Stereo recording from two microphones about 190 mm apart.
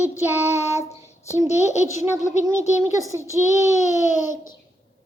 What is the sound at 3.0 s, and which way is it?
Child singing, 15° right (ahead or behind).